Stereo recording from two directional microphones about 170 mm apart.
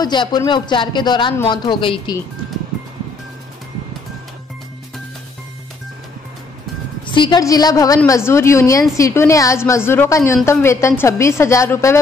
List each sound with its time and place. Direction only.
0.0 s speech: 25° left (ahead or behind)
7.1 s a woman's voice: 25° left (ahead or behind)